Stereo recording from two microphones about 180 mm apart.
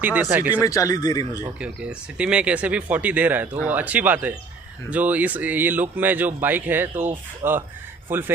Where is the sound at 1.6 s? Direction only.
5° right (ahead or behind).